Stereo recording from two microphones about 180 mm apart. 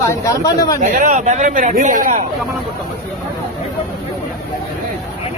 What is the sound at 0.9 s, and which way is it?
Speech, 45° right (ahead or behind).